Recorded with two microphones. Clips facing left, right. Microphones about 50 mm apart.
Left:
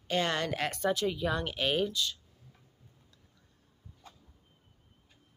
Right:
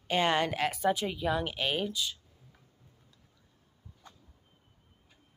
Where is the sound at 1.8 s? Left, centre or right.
Centre.